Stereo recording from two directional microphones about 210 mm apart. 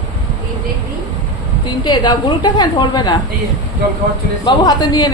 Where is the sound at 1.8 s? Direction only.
20° left (ahead or behind).